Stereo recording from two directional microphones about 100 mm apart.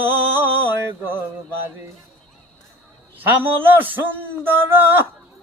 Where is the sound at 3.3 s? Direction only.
20° right (ahead or behind).